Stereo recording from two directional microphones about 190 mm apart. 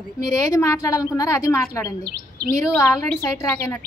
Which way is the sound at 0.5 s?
15° left (ahead or behind).